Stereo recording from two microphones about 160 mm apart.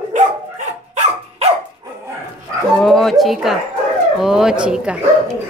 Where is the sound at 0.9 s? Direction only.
45° right (ahead or behind).